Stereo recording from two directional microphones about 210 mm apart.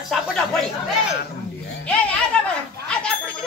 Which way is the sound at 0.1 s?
Centre (ahead or behind).